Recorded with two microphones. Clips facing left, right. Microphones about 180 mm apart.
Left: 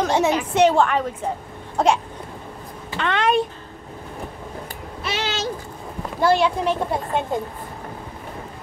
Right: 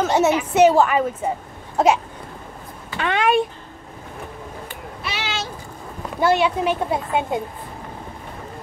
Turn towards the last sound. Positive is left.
turn(degrees=-5)  # may be behind; listen again after turning